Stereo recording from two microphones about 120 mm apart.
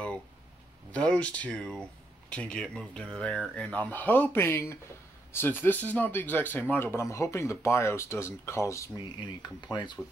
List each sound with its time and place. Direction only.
0.9 s speech: 10° left (ahead or behind); by 8.9 s 25° left (ahead or behind)
9.2 s speech: 35° left (ahead or behind)